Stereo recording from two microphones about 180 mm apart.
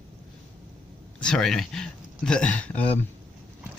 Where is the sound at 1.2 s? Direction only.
5° left (ahead or behind).